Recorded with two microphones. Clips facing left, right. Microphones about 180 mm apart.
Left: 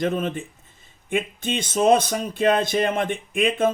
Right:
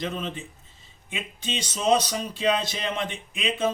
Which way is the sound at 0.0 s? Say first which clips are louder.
Left 7 dB; 50° left (ahead or behind).